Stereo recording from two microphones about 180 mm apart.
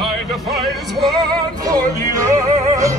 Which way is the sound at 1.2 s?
20° right (ahead or behind).